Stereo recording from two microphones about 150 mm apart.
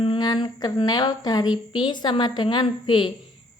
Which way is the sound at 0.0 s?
30° left (ahead or behind).